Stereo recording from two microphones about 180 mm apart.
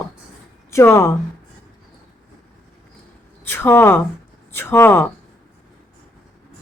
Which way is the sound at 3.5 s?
10° left (ahead or behind).